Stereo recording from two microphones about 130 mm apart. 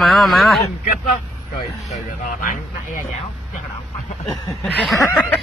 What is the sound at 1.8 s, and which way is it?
Speech, 90° left.